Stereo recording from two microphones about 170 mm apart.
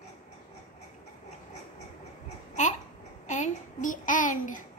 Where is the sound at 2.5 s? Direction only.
45° left (ahead or behind).